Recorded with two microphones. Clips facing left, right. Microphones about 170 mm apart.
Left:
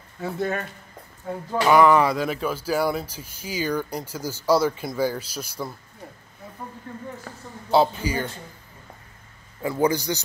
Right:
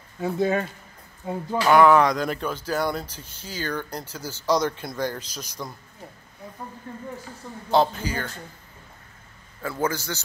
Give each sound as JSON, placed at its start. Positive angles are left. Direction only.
{"t": 0.2, "sound": "speech", "side_deg": -20}
{"t": 1.5, "sound": "speech", "side_deg": 0}
{"t": 7.3, "sound": "a man's voice", "side_deg": 60}
{"t": 7.7, "sound": "speech", "side_deg": 10}
{"t": 9.6, "sound": "speech", "side_deg": 15}